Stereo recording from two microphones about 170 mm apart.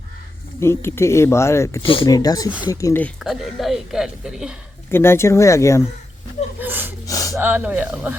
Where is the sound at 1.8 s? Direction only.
30° left (ahead or behind).